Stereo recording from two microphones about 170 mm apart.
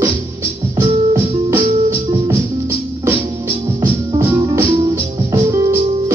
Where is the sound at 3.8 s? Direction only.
15° right (ahead or behind).